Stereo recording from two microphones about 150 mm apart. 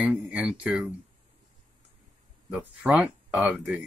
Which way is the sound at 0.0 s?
10° right (ahead or behind).